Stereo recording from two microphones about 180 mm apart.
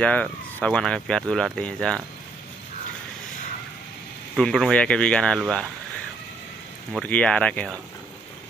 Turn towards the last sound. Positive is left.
turn(degrees=5)  # may be behind; listen again after turning